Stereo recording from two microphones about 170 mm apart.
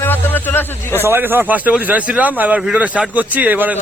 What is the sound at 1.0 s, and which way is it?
Speech, 10° right (ahead or behind).